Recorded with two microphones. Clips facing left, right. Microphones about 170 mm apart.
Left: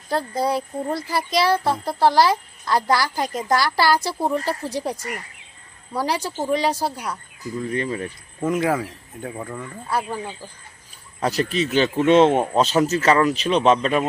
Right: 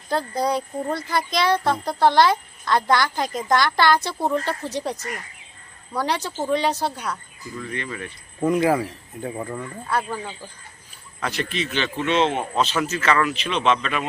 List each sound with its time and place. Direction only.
0.1 s speech: 5° left (ahead or behind)
7.6 s a man's voice: 35° left (ahead or behind)
8.4 s speech: centre (ahead or behind)
9.8 s speech: 10° left (ahead or behind)
11.2 s a man's voice: 40° left (ahead or behind)